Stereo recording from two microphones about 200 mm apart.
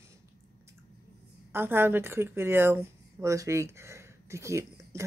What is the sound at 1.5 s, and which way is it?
Speech, 10° right (ahead or behind).